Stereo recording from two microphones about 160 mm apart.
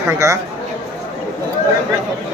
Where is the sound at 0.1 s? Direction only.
20° right (ahead or behind).